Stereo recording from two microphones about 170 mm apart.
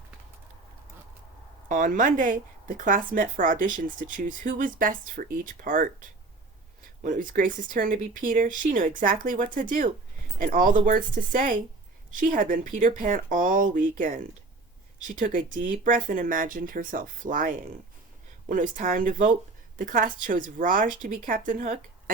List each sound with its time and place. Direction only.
1.6 s speech: 50° right (ahead or behind)